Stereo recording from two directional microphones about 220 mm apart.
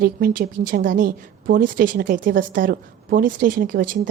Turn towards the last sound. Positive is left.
turn(degrees=-40)  # may be behind; listen again after turning